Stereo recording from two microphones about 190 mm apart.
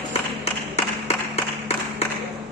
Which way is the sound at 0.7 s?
30° left (ahead or behind).